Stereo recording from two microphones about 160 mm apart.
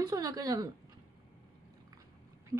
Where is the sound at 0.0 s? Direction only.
20° right (ahead or behind).